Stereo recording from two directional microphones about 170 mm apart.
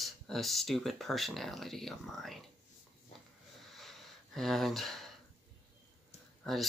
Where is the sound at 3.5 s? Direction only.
Centre (ahead or behind).